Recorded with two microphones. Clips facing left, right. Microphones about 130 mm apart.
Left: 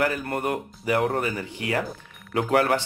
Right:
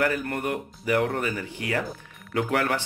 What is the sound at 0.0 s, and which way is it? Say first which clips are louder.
Speech: left 1 dB; 20° left (ahead or behind).